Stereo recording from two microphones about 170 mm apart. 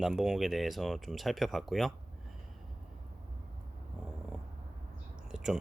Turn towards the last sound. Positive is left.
turn(degrees=-5)  # may be behind; listen again after turning